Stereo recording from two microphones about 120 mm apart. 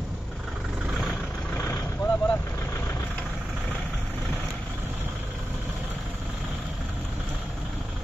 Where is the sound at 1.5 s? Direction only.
25° left (ahead or behind).